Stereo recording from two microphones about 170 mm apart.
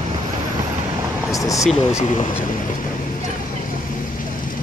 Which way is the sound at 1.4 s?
20° left (ahead or behind).